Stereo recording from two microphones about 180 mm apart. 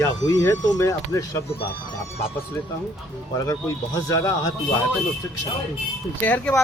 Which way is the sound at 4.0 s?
15° left (ahead or behind).